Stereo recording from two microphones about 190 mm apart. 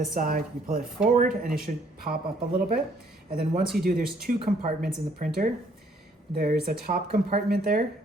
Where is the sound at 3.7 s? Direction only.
50° right (ahead or behind).